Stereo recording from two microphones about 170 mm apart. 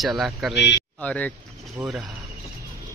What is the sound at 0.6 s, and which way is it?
Speech, 80° left.